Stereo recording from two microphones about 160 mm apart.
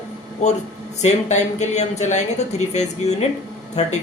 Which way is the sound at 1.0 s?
45° left (ahead or behind).